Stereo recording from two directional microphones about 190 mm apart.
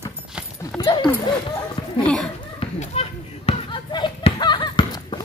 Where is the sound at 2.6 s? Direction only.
30° left (ahead or behind).